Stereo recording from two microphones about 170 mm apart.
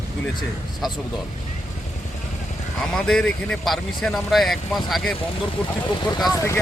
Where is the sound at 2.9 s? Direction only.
5° left (ahead or behind).